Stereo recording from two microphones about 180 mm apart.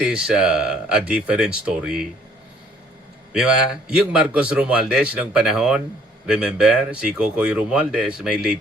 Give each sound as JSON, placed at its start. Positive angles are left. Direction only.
{"t": 0.0, "sound": "a man's voice", "side_deg": -5}
{"t": 3.3, "sound": "a man's voice", "side_deg": -5}